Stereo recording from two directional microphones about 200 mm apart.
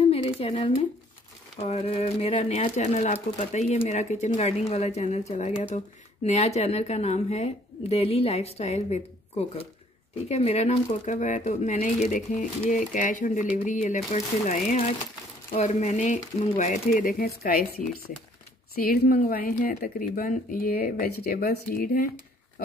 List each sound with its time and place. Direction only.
0.1 s a woman's voice: 30° left (ahead or behind)
10.2 s speech: 30° left (ahead or behind); by 17.6 s 45° left (ahead or behind)
18.8 s speech: 45° left (ahead or behind)